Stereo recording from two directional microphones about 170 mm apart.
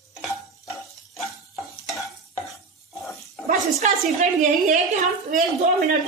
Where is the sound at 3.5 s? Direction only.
45° right (ahead or behind).